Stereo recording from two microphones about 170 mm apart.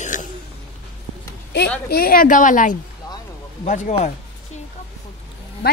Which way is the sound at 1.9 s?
60° left (ahead or behind).